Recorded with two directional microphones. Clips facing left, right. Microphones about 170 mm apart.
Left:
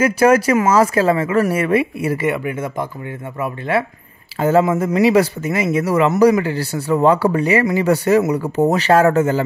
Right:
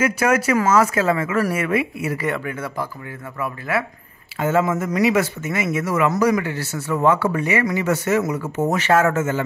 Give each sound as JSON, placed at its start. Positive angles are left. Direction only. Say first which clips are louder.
{"t": 0.0, "sound": "speech", "louder": "left 6 dB", "side_deg": 30}
{"t": 2.2, "sound": "speech", "louder": "left 5 dB", "side_deg": 15}